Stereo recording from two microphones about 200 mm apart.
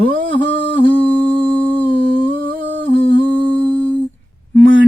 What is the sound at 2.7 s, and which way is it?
Humming, 60° right (ahead or behind).